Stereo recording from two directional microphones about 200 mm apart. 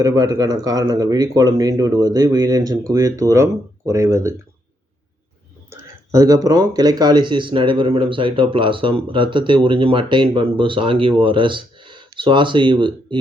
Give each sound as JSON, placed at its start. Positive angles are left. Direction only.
{"t": 0.0, "sound": "speech", "side_deg": -20}
{"t": 5.7, "sound": "speech", "side_deg": -15}